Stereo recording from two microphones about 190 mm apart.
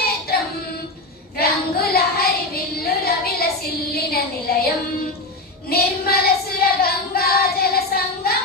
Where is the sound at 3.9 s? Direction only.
55° left (ahead or behind).